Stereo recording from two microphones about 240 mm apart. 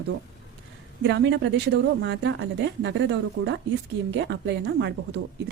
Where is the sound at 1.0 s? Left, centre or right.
Right.